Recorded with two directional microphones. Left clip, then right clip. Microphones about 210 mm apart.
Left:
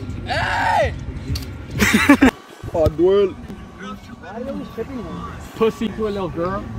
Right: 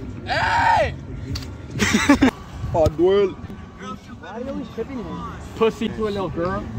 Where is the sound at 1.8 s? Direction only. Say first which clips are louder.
Left 3 dB; centre (ahead or behind).